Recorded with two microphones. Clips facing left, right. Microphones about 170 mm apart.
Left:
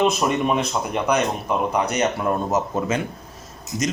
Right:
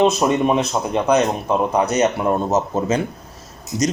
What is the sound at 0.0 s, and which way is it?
A man's voice, 25° right (ahead or behind).